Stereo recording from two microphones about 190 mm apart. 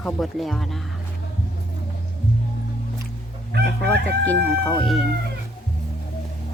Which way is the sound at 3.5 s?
60° right (ahead or behind).